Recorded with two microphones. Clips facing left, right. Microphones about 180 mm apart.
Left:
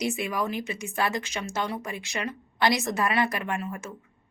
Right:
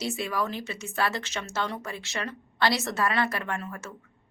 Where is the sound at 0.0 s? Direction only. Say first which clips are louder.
Left 1 dB; 15° left (ahead or behind).